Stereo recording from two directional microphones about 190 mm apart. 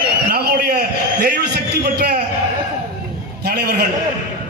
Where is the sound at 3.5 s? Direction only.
55° right (ahead or behind).